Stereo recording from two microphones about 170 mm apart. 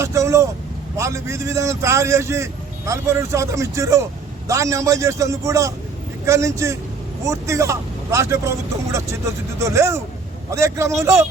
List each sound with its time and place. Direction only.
0.0 s vehicle: 15° right (ahead or behind)
0.9 s a man's voice: 15° right (ahead or behind)